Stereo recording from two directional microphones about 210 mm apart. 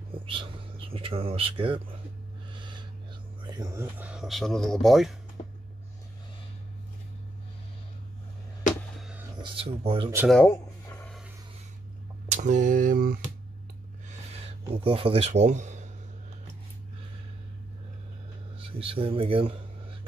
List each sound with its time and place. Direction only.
0.3 s speech: 25° right (ahead or behind)
2.5 s gasp: 20° right (ahead or behind)
3.4 s speech: 20° right (ahead or behind); by 5.1 s centre (ahead or behind)
9.4 s speech: 25° right (ahead or behind)
10.3 s a sound: 10° left (ahead or behind)
12.3 s a sound: 35° right (ahead or behind)
14.0 s a sound: 30° right (ahead or behind)
14.7 s speech: 25° right (ahead or behind)
18.6 s speech: 25° right (ahead or behind)